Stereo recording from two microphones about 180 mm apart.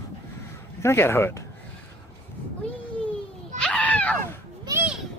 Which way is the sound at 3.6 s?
5° left (ahead or behind).